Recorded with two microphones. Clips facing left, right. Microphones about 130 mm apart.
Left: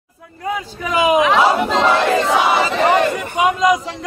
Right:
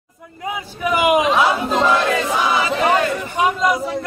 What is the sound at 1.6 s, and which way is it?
Battle cry, 70° left (ahead or behind).